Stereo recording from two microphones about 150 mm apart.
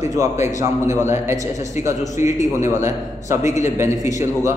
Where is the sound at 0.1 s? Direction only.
20° right (ahead or behind).